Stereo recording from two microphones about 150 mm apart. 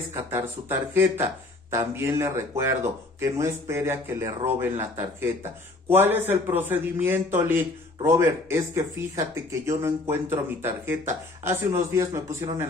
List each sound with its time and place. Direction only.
0.1 s a man's voice: 15° right (ahead or behind)